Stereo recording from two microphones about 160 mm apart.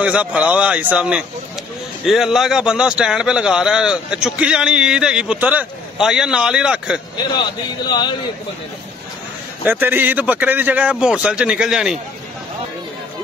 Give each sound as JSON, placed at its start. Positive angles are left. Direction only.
{"t": 0.0, "sound": "a man's voice", "side_deg": -10}
{"t": 7.2, "sound": "a man's voice", "side_deg": 25}
{"t": 9.7, "sound": "a man's voice", "side_deg": -10}